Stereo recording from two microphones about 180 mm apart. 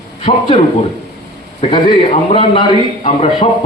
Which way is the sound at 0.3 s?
30° left (ahead or behind).